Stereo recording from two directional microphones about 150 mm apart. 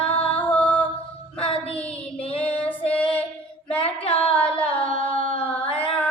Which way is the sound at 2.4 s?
10° left (ahead or behind).